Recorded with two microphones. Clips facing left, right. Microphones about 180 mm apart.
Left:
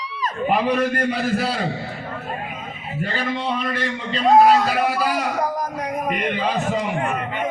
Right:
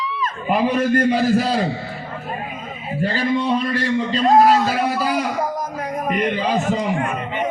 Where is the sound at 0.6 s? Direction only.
45° right (ahead or behind).